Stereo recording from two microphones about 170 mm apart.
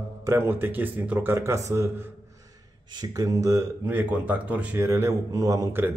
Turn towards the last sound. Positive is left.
turn(degrees=-10)  # may be behind; listen again after turning